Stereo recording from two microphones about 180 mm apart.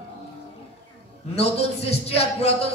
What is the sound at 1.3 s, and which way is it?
A man's voice, 35° left (ahead or behind).